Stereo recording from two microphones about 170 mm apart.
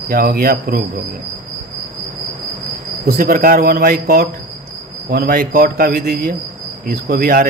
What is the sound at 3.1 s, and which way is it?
Speech, 60° right (ahead or behind).